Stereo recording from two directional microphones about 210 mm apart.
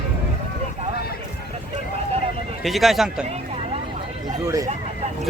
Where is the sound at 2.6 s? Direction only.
Centre (ahead or behind).